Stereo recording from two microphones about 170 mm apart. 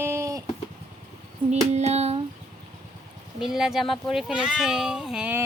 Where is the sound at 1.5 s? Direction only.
40° right (ahead or behind).